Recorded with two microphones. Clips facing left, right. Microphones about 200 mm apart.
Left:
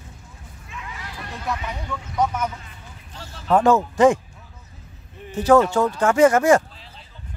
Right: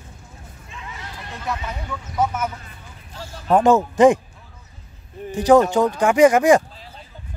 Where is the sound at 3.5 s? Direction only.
20° right (ahead or behind).